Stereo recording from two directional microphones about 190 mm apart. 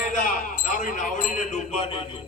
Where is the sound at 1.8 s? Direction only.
30° left (ahead or behind).